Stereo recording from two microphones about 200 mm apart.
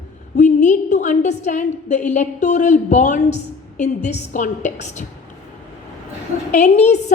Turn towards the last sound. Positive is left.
turn(degrees=35)  # may be behind; listen again after turning